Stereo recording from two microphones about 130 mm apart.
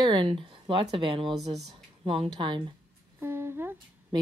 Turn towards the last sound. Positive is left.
turn(degrees=-15)  # may be behind; listen again after turning